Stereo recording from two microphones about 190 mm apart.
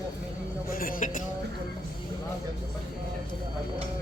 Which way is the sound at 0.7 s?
45° left (ahead or behind).